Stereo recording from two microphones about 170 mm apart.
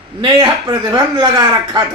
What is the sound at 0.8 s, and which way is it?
Speech, 25° right (ahead or behind).